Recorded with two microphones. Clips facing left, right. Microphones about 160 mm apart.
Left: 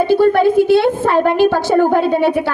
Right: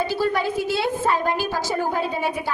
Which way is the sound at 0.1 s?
55° left (ahead or behind).